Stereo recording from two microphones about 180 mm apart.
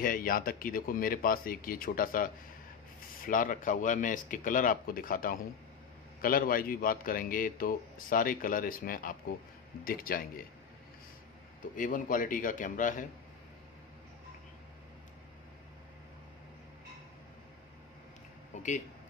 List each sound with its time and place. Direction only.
0.0 s a man's voice: 55° left (ahead or behind)
11.7 s a man's voice: 45° left (ahead or behind)
18.5 s a sound: 40° left (ahead or behind)